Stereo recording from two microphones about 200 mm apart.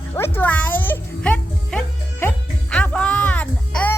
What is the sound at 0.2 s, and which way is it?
Music, 10° left (ahead or behind).